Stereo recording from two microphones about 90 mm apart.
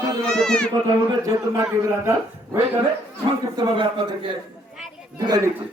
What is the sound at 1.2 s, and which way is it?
Speech, 40° right (ahead or behind).